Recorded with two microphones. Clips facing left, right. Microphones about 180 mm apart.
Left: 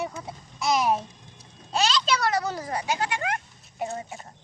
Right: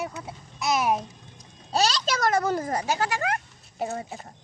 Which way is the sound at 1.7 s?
40° right (ahead or behind).